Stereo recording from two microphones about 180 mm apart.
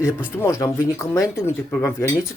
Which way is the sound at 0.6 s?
15° left (ahead or behind).